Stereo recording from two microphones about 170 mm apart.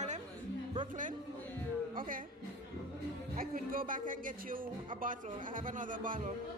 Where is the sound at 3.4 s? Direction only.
55° right (ahead or behind).